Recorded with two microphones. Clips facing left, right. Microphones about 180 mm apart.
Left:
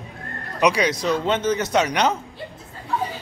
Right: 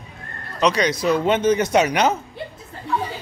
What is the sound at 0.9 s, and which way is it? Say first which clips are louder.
Speech: right 3 dB; 5° right (ahead or behind).